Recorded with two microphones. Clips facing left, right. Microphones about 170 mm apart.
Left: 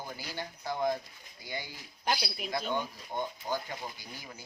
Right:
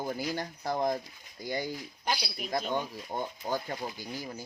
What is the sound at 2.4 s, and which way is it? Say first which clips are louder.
Speech: right 2 dB; 45° right (ahead or behind).